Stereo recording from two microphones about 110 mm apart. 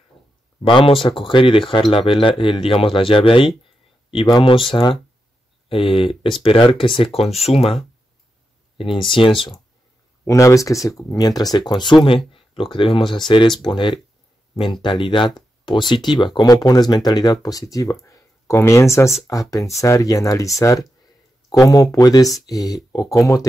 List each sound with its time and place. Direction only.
0.2 s a sound: centre (ahead or behind)
0.7 s speech: 50° left (ahead or behind)
5.7 s speech: 55° left (ahead or behind)
8.7 s speech: 50° left (ahead or behind)
10.2 s speech: 30° left (ahead or behind)